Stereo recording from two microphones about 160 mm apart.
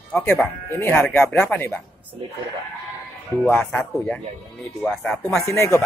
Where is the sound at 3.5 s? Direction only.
10° left (ahead or behind).